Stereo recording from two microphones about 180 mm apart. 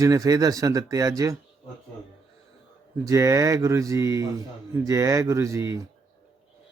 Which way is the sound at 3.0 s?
20° right (ahead or behind).